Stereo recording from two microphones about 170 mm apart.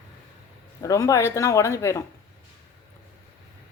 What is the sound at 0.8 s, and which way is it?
A man's voice, 20° left (ahead or behind).